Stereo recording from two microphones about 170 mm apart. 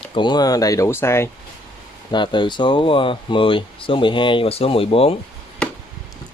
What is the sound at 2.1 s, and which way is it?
Speech, 30° left (ahead or behind).